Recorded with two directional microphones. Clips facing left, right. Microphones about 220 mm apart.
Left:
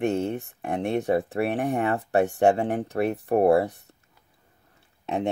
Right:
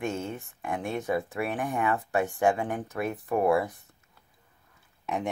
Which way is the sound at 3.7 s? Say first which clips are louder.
Left 3 dB; 70° left (ahead or behind).